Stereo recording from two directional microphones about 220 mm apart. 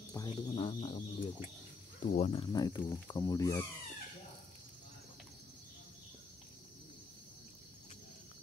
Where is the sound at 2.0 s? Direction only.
30° left (ahead or behind).